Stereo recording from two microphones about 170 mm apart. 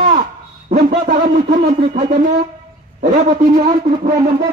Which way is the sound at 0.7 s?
55° right (ahead or behind).